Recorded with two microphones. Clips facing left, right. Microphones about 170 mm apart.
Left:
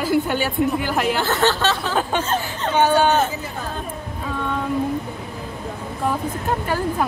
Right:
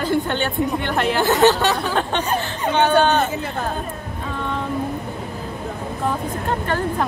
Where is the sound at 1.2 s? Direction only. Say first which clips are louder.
Right 4 dB; 15° right (ahead or behind).